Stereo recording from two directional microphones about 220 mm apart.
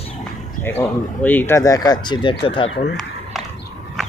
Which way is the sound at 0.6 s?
10° left (ahead or behind).